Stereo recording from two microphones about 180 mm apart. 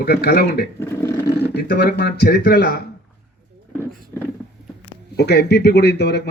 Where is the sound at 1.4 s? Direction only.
60° left (ahead or behind).